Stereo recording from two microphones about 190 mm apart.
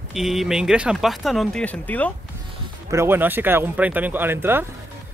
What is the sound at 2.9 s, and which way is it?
Speech, 15° right (ahead or behind).